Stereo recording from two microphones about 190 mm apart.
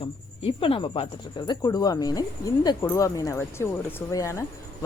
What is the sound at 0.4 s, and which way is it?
Speech, 30° left (ahead or behind).